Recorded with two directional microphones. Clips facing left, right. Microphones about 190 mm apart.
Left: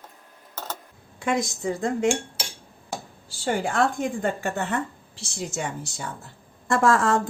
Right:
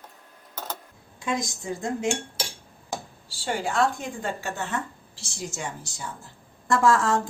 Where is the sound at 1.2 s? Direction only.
65° left (ahead or behind).